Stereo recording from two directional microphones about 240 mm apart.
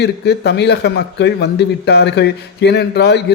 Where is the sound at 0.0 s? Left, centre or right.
Left.